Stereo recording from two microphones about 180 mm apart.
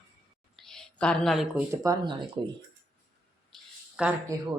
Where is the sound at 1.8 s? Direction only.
20° right (ahead or behind).